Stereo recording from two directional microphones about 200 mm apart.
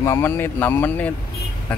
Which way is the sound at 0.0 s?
15° left (ahead or behind).